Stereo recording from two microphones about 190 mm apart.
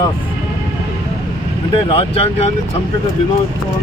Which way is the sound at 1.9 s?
30° left (ahead or behind).